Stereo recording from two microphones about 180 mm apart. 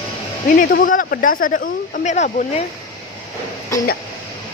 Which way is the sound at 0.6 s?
50° left (ahead or behind).